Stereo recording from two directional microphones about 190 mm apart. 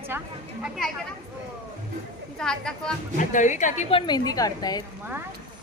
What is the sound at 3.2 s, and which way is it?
A woman's voice, 40° left (ahead or behind).